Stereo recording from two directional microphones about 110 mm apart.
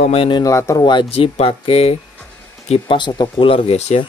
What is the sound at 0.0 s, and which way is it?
Speech, 60° left (ahead or behind).